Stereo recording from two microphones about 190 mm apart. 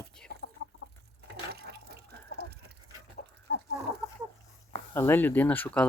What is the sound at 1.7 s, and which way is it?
Water, 60° right (ahead or behind).